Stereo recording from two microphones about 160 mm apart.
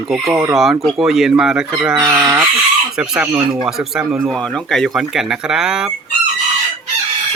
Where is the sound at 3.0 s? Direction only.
5° right (ahead or behind).